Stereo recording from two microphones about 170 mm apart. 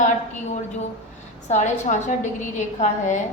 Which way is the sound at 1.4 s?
45° left (ahead or behind).